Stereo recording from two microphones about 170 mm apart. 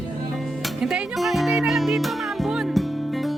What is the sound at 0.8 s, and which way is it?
Music, 5° right (ahead or behind).